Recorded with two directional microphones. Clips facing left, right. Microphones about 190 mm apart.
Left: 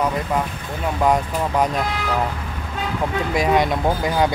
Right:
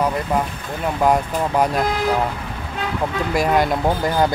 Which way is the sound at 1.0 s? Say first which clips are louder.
Right 1 dB; 5° right (ahead or behind).